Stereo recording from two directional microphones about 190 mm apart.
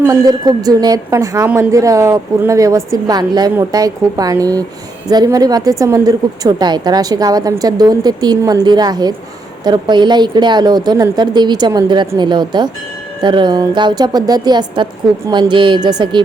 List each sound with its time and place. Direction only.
0.1 s a woman's voice: 20° right (ahead or behind)